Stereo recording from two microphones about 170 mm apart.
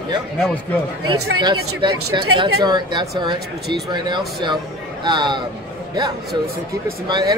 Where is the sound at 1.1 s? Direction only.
25° right (ahead or behind).